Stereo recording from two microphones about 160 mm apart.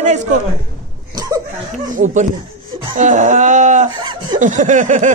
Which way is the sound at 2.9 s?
50° right (ahead or behind).